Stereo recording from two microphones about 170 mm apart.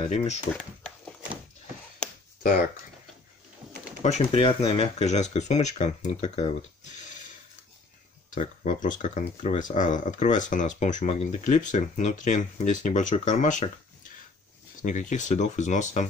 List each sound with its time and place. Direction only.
0.0 s speech: 40° left (ahead or behind)
0.6 s a sound: 5° left (ahead or behind)
4.0 s speech: 40° left (ahead or behind)
8.8 s speech: 50° left (ahead or behind)
14.8 s speech: 50° left (ahead or behind)